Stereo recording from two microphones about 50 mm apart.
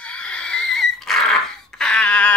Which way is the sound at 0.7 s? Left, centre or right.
Centre.